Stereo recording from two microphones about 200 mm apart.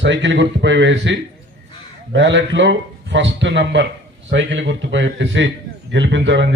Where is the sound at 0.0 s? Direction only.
65° right (ahead or behind).